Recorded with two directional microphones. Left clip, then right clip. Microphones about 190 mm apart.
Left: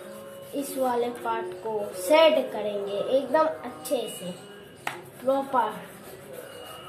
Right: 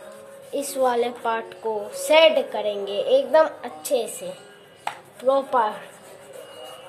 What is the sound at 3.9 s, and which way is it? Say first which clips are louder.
Speech: right 6 dB; 55° right (ahead or behind).